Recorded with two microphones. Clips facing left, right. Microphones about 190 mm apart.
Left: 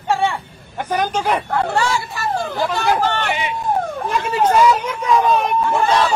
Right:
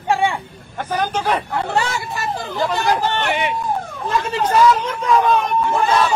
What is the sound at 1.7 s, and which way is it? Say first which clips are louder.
Speech: left 1 dB; 20° right (ahead or behind).